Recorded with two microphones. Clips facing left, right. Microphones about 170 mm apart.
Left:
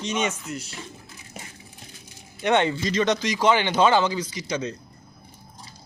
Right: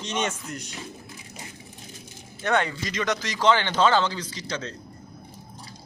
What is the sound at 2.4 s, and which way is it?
Speech, 25° left (ahead or behind).